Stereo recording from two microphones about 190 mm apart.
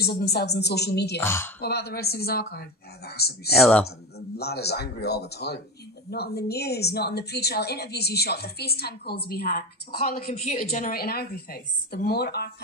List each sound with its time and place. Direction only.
0.0 s a woman's voice: 55° left (ahead or behind)
1.2 s speech: 15° left (ahead or behind)
1.6 s a woman's voice: 55° left (ahead or behind)
3.5 s speech: centre (ahead or behind)
4.4 s a woman's voice: 60° left (ahead or behind)
10.2 s a woman's voice: 35° left (ahead or behind); by 12.4 s 60° left (ahead or behind)